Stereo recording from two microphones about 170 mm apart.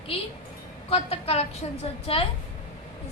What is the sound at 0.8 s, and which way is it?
A woman's voice, 35° left (ahead or behind).